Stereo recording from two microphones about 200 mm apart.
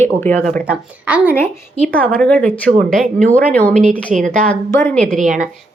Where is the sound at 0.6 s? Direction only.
5° right (ahead or behind).